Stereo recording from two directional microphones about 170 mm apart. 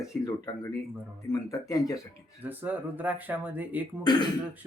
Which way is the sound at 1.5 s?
20° left (ahead or behind).